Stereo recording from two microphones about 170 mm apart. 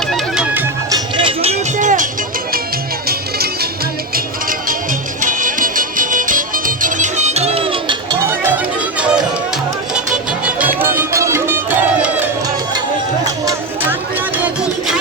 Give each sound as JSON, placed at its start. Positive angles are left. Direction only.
{"t": 0.1, "sound": "music", "side_deg": -5}
{"t": 0.9, "sound": "music", "side_deg": -25}
{"t": 3.1, "sound": "music", "side_deg": -65}
{"t": 4.1, "sound": "music", "side_deg": -55}
{"t": 10.8, "sound": "music", "side_deg": -15}